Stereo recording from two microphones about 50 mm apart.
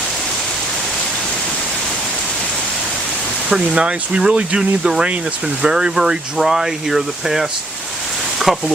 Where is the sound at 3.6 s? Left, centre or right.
Centre.